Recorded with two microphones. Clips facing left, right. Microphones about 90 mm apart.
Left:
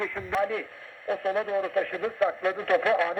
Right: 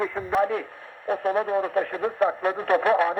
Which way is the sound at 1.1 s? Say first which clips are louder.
Right 3 dB; 15° right (ahead or behind).